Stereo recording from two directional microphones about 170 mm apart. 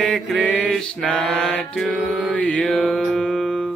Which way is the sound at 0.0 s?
5° left (ahead or behind).